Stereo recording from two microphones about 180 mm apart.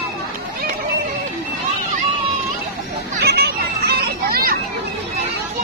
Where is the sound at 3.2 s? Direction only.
65° right (ahead or behind).